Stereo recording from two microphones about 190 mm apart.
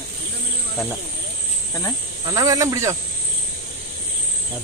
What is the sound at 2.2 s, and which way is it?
Speech, 20° right (ahead or behind).